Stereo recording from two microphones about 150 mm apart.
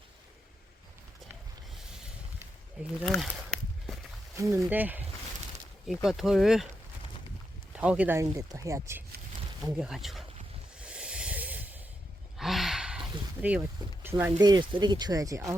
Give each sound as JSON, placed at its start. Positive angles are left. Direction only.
{"t": 2.8, "sound": "speech", "side_deg": -10}
{"t": 3.1, "sound": "a sound", "side_deg": 0}
{"t": 4.4, "sound": "speech", "side_deg": -20}
{"t": 5.9, "sound": "speech", "side_deg": 0}
{"t": 7.8, "sound": "speech", "side_deg": -10}
{"t": 9.7, "sound": "speech", "side_deg": -5}
{"t": 10.8, "sound": "hiss", "side_deg": -5}
{"t": 12.4, "sound": "a sound", "side_deg": 0}
{"t": 14.3, "sound": "speech", "side_deg": -30}